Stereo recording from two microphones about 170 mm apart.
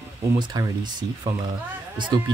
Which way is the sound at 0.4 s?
25° right (ahead or behind).